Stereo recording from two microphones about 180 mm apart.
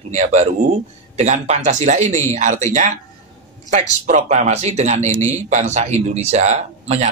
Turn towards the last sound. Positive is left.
turn(degrees=-35)  # may be behind; listen again after turning